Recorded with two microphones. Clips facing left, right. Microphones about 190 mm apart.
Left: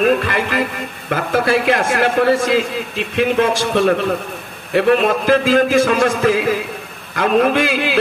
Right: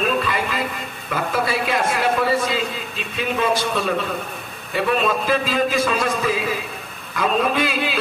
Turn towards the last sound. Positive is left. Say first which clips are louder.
# left 5 dB
turn(degrees=70)  # may be behind; listen again after turning